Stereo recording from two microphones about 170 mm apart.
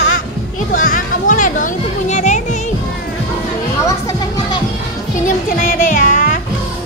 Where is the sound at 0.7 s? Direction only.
50° left (ahead or behind).